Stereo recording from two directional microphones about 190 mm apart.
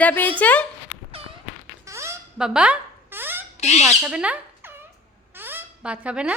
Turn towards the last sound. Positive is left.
turn(degrees=-5)  # may be behind; listen again after turning